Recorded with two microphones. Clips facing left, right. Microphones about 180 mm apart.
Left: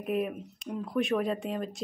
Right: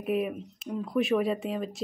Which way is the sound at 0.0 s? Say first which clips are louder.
Right 2 dB; centre (ahead or behind).